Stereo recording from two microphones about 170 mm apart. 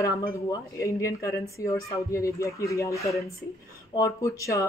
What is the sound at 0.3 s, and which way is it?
Speech, 20° left (ahead or behind).